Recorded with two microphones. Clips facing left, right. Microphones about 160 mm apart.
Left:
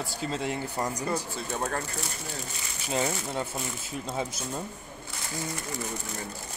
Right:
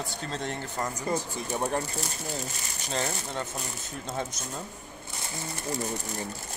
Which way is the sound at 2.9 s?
10° left (ahead or behind).